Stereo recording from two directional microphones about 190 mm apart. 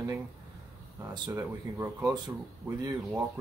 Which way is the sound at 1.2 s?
15° right (ahead or behind).